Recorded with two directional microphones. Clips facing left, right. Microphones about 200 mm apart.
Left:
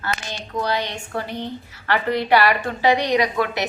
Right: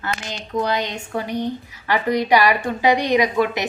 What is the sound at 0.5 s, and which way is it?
A woman's voice, 20° right (ahead or behind).